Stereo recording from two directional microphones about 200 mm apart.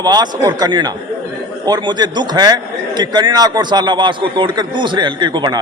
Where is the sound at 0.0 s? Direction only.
20° right (ahead or behind).